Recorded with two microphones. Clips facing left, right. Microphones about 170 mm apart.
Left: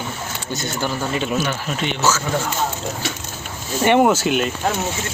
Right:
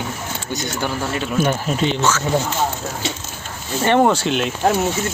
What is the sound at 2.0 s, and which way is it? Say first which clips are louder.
Speech: even; 10° left (ahead or behind).